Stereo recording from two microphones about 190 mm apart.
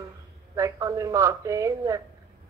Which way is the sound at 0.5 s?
15° right (ahead or behind).